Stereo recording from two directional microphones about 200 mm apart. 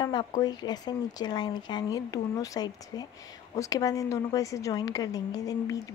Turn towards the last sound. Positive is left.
turn(degrees=20)  # may be behind; listen again after turning